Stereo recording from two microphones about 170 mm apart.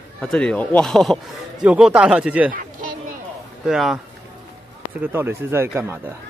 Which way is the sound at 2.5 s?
50° right (ahead or behind).